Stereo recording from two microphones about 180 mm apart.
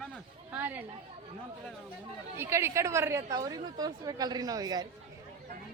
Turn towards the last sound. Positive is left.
turn(degrees=-20)  # may be behind; listen again after turning